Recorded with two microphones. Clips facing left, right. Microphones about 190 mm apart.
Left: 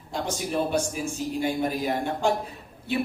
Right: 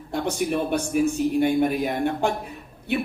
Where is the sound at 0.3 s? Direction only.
60° right (ahead or behind).